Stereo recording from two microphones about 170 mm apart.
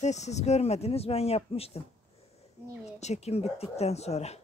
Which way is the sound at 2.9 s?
40° left (ahead or behind).